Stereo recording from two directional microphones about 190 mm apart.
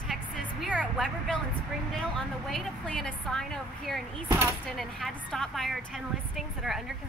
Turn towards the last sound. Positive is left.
turn(degrees=0)  # may be behind; listen again after turning